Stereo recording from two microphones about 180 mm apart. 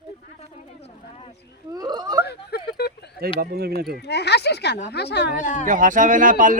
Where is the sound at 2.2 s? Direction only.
65° left (ahead or behind).